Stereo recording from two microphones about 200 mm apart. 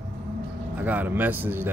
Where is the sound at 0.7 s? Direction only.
10° right (ahead or behind).